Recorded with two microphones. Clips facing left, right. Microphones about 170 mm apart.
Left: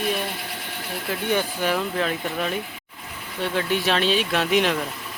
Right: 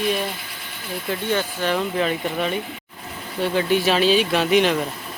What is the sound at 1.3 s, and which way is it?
Speech, 10° left (ahead or behind).